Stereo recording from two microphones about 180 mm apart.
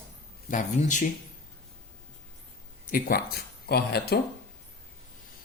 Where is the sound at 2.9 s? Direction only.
55° left (ahead or behind).